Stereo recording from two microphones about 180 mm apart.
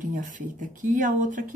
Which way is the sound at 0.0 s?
45° right (ahead or behind).